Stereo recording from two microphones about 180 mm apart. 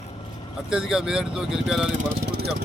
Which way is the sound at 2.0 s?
60° right (ahead or behind).